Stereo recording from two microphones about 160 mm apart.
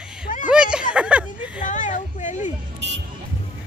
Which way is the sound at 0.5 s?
5° right (ahead or behind).